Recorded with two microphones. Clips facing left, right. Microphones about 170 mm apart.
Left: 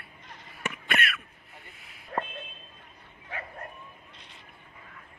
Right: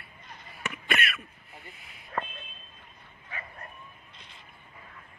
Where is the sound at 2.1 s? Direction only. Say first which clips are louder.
Left 2 dB; 50° left (ahead or behind).